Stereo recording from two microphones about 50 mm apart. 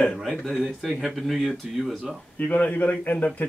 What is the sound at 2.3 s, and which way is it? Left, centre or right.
A man's voice, left.